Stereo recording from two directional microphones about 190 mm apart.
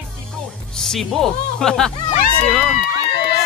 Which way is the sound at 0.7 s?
Centre (ahead or behind).